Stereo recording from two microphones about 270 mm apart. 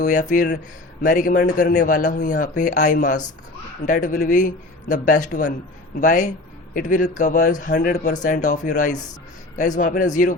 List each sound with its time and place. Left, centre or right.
0.0 s a man's voice: left